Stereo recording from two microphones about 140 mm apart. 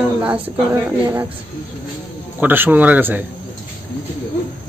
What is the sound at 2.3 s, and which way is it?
Speech, 15° right (ahead or behind).